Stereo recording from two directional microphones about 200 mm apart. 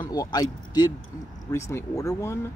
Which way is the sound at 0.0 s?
20° left (ahead or behind).